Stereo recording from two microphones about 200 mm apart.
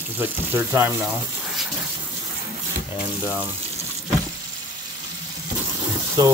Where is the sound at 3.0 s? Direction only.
10° right (ahead or behind).